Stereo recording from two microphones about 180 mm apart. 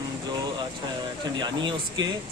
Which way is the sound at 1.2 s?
25° right (ahead or behind).